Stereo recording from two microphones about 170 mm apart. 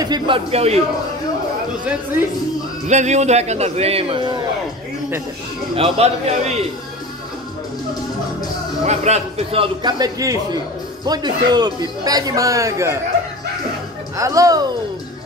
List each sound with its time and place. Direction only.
0.0 s a man's voice: 30° right (ahead or behind)
2.9 s a man's voice: 45° right (ahead or behind); by 4.5 s 25° right (ahead or behind)
5.8 s a man's voice: 40° right (ahead or behind)
8.8 s a man's voice: 40° right (ahead or behind); by 13.0 s 15° right (ahead or behind)
14.1 s a man's voice: 20° right (ahead or behind)